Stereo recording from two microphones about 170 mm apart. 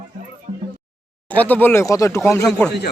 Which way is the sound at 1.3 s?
10° left (ahead or behind).